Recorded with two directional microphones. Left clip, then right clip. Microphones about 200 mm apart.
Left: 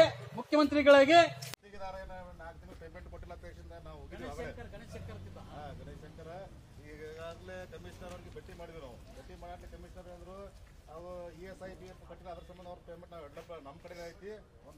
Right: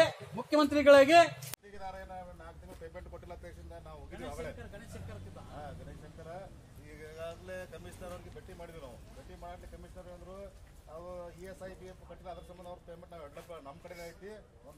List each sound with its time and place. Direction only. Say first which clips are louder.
0.0 s a man's voice: left 2 dB; 15° right (ahead or behind)
1.5 s a man's voice: even; centre (ahead or behind)
7.0 s a man's voice: right 1 dB; 10° right (ahead or behind)
11.1 s a man's voice: even; 10° right (ahead or behind)